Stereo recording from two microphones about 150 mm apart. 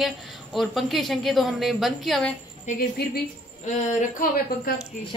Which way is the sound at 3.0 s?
90° left.